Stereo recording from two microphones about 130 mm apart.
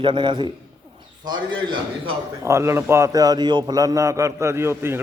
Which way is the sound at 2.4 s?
20° right (ahead or behind).